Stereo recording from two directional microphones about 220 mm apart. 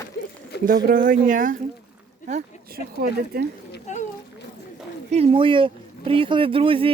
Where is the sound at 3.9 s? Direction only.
30° left (ahead or behind).